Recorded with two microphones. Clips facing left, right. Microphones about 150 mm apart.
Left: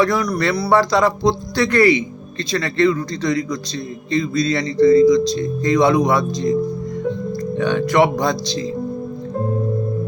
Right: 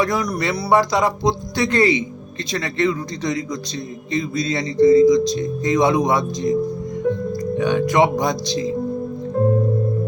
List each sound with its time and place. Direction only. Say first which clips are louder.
0.0 s speech: left 3 dB; 20° right (ahead or behind)